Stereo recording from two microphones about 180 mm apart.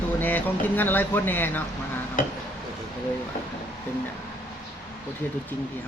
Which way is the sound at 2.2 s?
45° left (ahead or behind).